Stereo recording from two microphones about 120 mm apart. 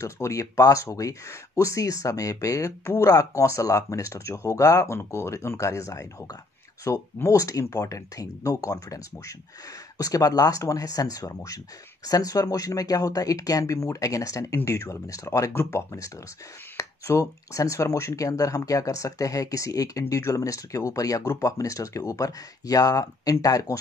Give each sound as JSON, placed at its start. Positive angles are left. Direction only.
{"t": 0.0, "sound": "speech", "side_deg": 25}